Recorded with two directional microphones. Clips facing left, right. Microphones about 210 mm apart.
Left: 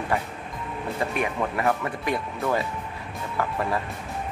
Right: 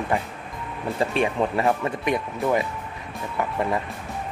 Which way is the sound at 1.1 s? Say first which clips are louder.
Right 5 dB; 25° right (ahead or behind).